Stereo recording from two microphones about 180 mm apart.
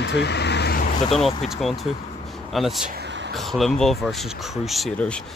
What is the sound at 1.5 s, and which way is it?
Speech, centre (ahead or behind).